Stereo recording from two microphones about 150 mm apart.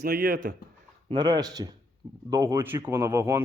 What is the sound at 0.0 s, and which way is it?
Speech, 85° right.